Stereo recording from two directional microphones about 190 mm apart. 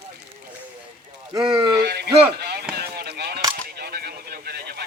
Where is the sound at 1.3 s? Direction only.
25° right (ahead or behind).